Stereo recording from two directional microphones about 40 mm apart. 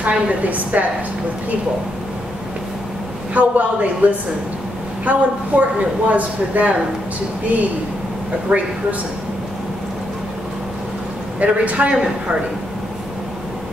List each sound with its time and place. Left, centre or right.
0.0 s a woman's voice: right
3.3 s a woman's voice: right
8.5 s a woman's voice: right
11.3 s a woman's voice: right